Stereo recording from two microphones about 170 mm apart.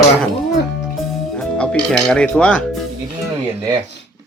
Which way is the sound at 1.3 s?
5° left (ahead or behind).